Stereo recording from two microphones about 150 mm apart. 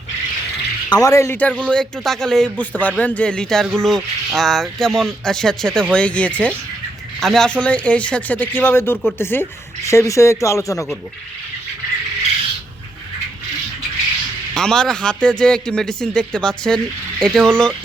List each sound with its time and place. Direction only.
0.9 s a man's voice: 25° left (ahead or behind)
14.5 s a man's voice: 5° left (ahead or behind)